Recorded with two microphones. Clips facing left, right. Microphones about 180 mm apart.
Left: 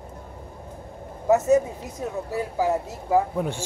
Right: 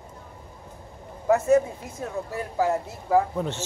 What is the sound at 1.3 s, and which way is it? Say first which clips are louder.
Speech: left 1 dB; 20° left (ahead or behind).